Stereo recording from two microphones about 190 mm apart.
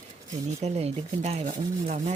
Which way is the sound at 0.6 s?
35° right (ahead or behind).